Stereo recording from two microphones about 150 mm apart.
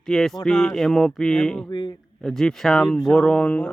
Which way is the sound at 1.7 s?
30° left (ahead or behind).